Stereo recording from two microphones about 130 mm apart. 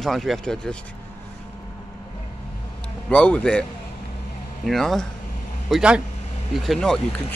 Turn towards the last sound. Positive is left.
turn(degrees=5)  # may be behind; listen again after turning